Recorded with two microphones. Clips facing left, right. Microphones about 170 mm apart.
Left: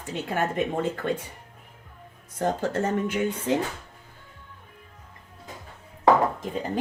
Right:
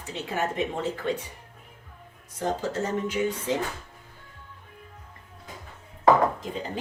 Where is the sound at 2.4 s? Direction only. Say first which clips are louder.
Left 3 dB; 55° left (ahead or behind).